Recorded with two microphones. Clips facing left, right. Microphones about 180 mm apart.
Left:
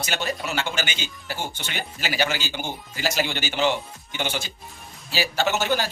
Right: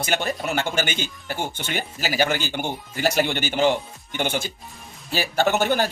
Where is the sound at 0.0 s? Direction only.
55° right (ahead or behind).